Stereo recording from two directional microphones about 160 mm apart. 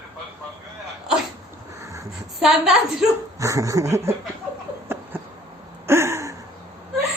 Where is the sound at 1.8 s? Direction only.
20° right (ahead or behind).